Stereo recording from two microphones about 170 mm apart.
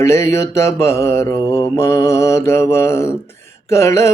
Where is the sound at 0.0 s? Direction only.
15° left (ahead or behind).